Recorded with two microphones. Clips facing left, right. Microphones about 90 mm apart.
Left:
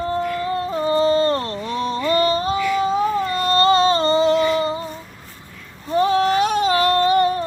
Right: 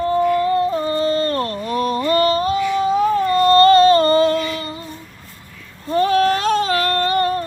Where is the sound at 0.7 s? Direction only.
20° left (ahead or behind).